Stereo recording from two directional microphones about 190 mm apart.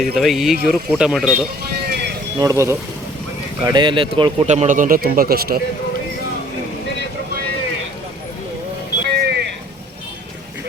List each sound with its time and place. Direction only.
0.0 s speech: centre (ahead or behind)
1.8 s vehicle: 55° right (ahead or behind)
2.4 s speech: 15° right (ahead or behind); by 5.5 s 55° right (ahead or behind)
9.1 s vehicle: 55° right (ahead or behind)